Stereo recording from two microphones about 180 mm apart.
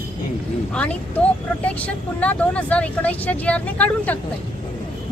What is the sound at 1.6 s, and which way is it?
Speech, 10° left (ahead or behind).